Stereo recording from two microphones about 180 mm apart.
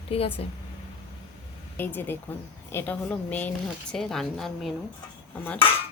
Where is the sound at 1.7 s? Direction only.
10° left (ahead or behind).